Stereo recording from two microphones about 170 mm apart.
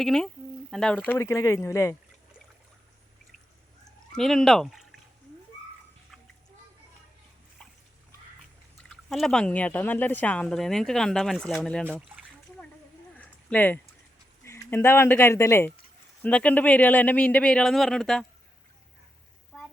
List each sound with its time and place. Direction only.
0.0 s speech: 5° left (ahead or behind)
4.1 s speech: centre (ahead or behind)
8.8 s speech: 5° left (ahead or behind)
11.9 s speech: 5° right (ahead or behind)
13.1 s a sound: 10° left (ahead or behind)
14.4 s speech: 15° left (ahead or behind)